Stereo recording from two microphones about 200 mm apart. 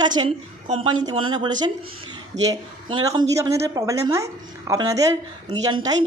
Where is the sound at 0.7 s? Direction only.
25° right (ahead or behind).